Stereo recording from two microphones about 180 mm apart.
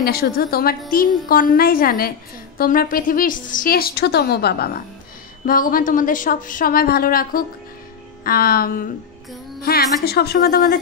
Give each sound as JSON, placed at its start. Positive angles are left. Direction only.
{"t": 0.0, "sound": "a woman's voice", "side_deg": 60}